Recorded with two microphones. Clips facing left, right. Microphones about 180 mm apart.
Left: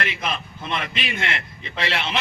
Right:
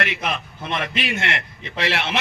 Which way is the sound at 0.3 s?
65° right (ahead or behind).